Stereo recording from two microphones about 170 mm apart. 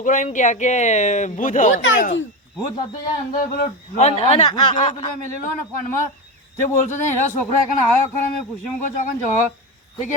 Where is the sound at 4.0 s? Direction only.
40° left (ahead or behind).